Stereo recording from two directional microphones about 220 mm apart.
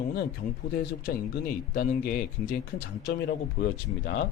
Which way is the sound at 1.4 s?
45° left (ahead or behind).